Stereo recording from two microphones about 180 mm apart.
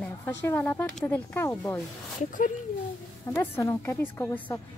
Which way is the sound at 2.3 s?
45° left (ahead or behind).